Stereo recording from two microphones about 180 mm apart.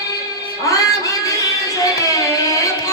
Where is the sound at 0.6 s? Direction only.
15° left (ahead or behind).